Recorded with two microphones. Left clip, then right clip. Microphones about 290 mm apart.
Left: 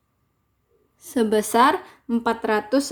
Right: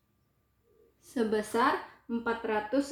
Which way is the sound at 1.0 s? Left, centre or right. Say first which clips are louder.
Left 9 dB; left.